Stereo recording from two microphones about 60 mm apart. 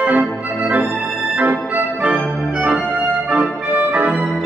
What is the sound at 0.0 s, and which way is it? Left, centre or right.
Organ, right.